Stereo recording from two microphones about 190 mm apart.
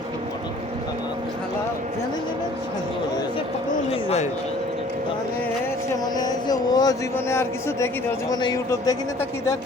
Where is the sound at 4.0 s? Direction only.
35° left (ahead or behind).